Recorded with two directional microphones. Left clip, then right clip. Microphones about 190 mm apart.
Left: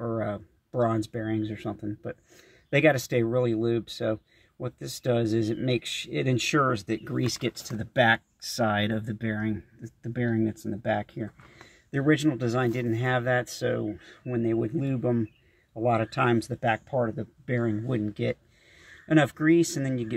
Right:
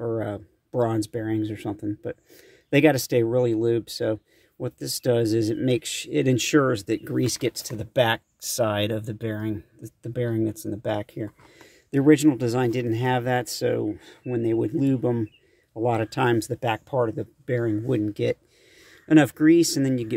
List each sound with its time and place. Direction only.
0.0 s speech: 30° right (ahead or behind)